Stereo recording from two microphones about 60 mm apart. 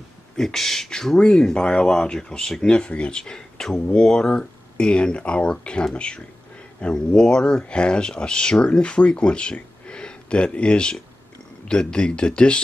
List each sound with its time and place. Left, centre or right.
0.4 s speech: centre